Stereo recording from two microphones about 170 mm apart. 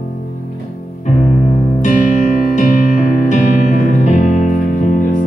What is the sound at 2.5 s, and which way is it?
Music, 45° left (ahead or behind).